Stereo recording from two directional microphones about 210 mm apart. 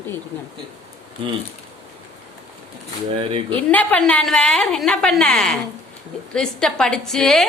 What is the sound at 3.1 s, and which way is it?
Speech, 25° right (ahead or behind).